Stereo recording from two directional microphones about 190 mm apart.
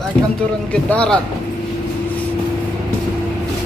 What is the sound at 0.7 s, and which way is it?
Speech, 5° left (ahead or behind).